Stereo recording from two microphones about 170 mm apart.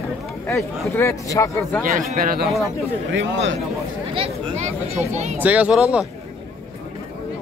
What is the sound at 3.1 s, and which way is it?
Speech, 90° right.